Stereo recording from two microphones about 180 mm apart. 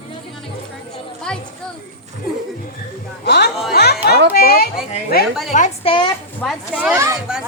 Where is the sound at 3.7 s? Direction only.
60° left (ahead or behind).